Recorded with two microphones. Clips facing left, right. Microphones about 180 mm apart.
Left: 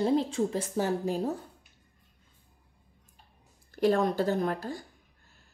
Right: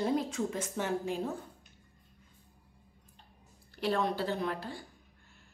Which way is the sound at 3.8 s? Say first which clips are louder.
Left 6 dB; 45° left (ahead or behind).